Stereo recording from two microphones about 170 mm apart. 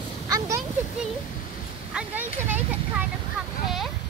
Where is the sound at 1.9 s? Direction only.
10° right (ahead or behind).